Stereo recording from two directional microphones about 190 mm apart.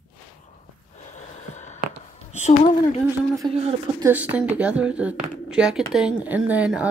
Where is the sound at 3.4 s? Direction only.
30° right (ahead or behind).